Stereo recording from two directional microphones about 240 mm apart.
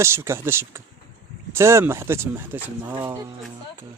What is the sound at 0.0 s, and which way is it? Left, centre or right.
Speech, centre.